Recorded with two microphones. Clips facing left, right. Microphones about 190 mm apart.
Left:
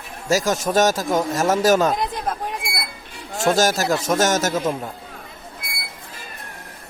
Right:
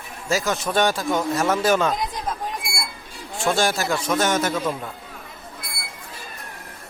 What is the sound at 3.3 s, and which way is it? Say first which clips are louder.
A man's voice: left 3 dB; 40° left (ahead or behind).